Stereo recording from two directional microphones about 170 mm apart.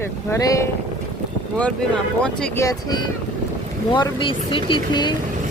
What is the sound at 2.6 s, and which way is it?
Speech, 25° left (ahead or behind).